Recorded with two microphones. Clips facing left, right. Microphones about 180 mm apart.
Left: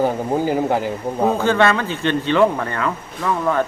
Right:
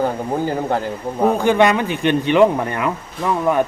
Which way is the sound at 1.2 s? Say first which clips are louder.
Right 2 dB; 15° right (ahead or behind).